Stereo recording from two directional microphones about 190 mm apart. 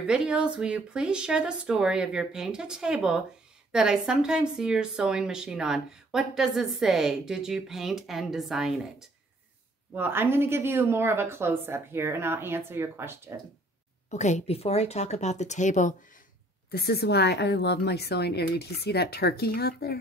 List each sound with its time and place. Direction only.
0.0 s speech: 5° right (ahead or behind)
9.9 s speech: 10° right (ahead or behind)
14.1 s a woman's voice: 40° left (ahead or behind)
16.7 s a woman's voice: 60° left (ahead or behind)